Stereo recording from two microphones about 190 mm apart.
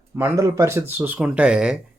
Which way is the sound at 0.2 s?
15° right (ahead or behind).